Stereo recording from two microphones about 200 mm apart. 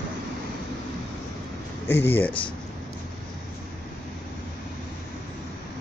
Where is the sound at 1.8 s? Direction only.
10° left (ahead or behind).